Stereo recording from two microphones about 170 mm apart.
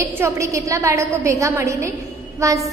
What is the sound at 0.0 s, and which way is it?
A woman's voice, 20° right (ahead or behind).